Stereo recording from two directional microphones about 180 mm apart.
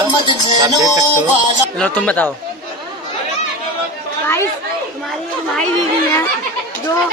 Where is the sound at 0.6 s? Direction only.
20° right (ahead or behind).